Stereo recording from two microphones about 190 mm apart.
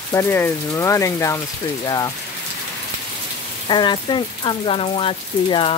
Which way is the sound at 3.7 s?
25° left (ahead or behind).